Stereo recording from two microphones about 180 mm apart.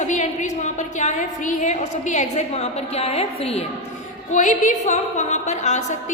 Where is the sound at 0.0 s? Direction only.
40° left (ahead or behind).